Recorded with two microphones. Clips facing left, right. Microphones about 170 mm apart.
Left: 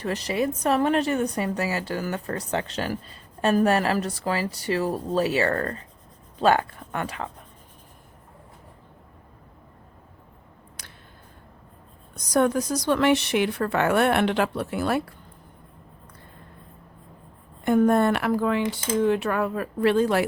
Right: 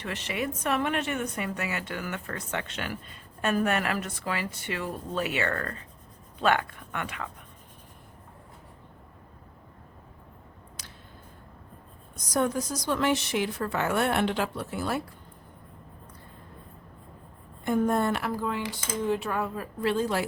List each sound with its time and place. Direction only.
0.0 s a woman's voice: 40° left (ahead or behind)
10.8 s a sound: 55° left (ahead or behind)
12.1 s a woman's voice: 70° left (ahead or behind)
17.7 s a woman's voice: 65° left (ahead or behind)